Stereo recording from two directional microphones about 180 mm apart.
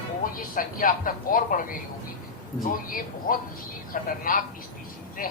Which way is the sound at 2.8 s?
50° left (ahead or behind).